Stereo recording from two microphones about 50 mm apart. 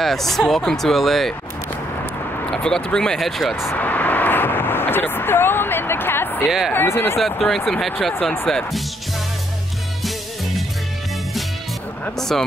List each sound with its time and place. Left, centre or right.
0.0 s speech: centre
2.5 s speech: centre
3.2 s speech: centre
3.7 s vehicle: left
6.4 s speech: centre
12.2 s speech: centre